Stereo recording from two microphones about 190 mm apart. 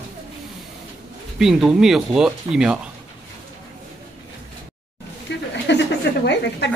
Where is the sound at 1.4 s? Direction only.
Centre (ahead or behind).